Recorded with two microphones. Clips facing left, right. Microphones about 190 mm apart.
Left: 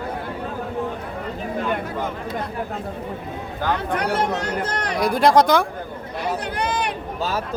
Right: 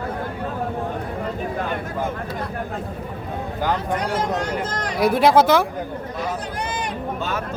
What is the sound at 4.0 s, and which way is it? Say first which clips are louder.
Speech: left 1 dB; 65° left (ahead or behind).